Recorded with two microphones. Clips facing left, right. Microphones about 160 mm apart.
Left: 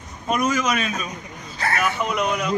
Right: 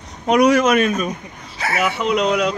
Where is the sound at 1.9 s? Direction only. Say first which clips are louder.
Right 5 dB; 70° right (ahead or behind).